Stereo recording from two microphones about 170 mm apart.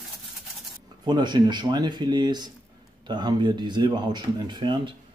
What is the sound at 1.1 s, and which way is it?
Speech, 25° right (ahead or behind).